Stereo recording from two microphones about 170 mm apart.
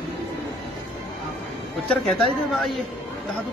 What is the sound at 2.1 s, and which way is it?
Speech, centre (ahead or behind).